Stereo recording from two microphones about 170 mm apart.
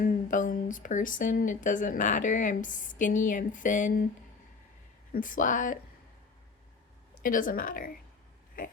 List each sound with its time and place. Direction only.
0.0 s speech: 50° left (ahead or behind)
5.1 s speech: 50° left (ahead or behind)
7.1 s a woman's voice: 50° left (ahead or behind)